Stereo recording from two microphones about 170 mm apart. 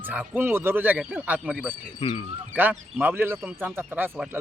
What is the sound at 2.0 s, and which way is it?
Speech, 30° left (ahead or behind).